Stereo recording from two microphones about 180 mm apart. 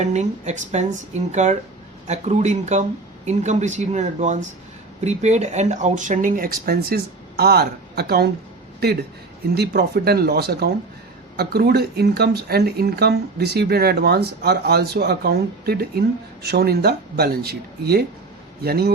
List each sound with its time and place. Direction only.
0.0 s speech: 40° right (ahead or behind); by 8.3 s 65° right (ahead or behind)
9.6 s speech: 60° right (ahead or behind)